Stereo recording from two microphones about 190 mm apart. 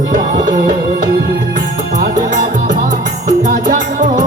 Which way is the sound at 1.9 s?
45° right (ahead or behind).